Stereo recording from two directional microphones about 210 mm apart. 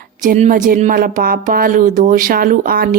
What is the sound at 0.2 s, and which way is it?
A woman's voice, 35° right (ahead or behind).